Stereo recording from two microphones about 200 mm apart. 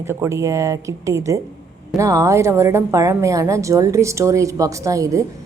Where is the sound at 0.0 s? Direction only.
10° right (ahead or behind).